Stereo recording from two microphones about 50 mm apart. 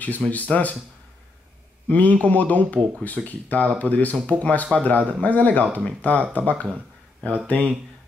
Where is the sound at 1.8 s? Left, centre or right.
Left.